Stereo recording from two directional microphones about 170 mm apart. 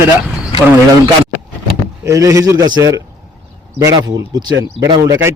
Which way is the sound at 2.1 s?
20° right (ahead or behind).